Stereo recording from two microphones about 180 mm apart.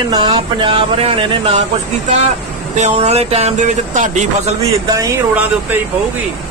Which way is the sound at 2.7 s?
40° right (ahead or behind).